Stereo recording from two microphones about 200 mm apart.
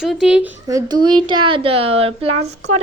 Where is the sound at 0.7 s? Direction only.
20° right (ahead or behind).